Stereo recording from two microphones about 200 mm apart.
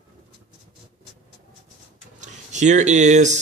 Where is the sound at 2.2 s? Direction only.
35° right (ahead or behind).